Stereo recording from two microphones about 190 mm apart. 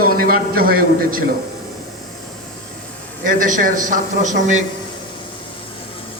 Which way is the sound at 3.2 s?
45° right (ahead or behind).